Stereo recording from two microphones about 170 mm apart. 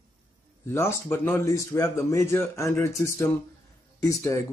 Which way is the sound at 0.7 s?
15° left (ahead or behind).